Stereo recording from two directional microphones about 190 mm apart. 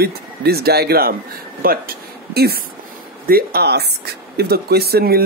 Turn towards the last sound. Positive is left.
turn(degrees=-55)  # may be behind; listen again after turning